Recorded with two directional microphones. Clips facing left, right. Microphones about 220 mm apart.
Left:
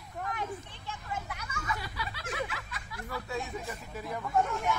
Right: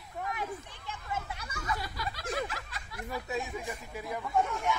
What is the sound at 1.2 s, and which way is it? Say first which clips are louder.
Snicker: right 1 dB; 30° right (ahead or behind).